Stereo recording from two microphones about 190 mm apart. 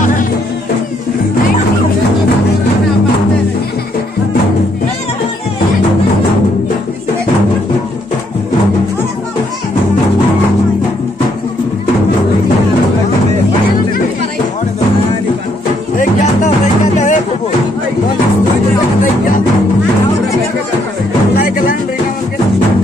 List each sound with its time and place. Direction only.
16.0 s music: 40° left (ahead or behind)
21.4 s music: 50° left (ahead or behind)